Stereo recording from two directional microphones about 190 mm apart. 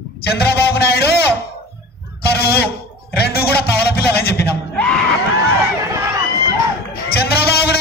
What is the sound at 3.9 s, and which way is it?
Music, 55° left (ahead or behind).